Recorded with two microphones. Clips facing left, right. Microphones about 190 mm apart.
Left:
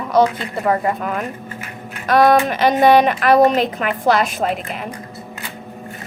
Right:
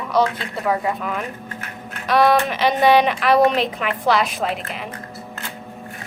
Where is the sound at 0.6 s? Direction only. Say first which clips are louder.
Left 3 dB; 45° left (ahead or behind).